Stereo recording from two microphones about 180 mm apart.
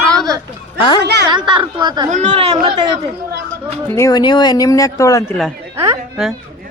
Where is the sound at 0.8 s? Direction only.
25° left (ahead or behind).